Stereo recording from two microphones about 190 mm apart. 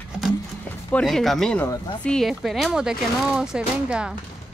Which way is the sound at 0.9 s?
Centre (ahead or behind).